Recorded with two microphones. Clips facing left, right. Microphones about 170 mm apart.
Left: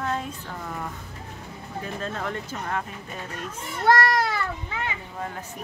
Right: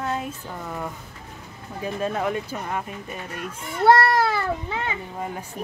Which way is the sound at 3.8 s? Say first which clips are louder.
Right 4 dB; 30° right (ahead or behind).